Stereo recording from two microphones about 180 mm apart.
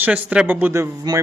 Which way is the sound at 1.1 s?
20° right (ahead or behind).